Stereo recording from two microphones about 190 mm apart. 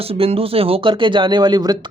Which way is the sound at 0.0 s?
30° right (ahead or behind).